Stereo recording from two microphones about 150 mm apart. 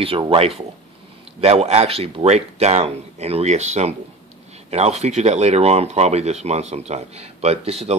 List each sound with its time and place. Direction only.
0.0 s speech: 40° right (ahead or behind)